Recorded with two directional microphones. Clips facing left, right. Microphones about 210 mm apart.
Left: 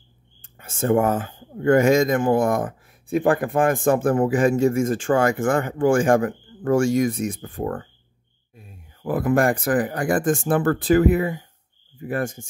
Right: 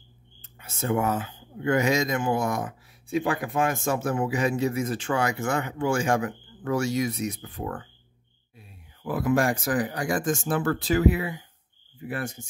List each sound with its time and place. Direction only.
0.4 s speech: 50° left (ahead or behind)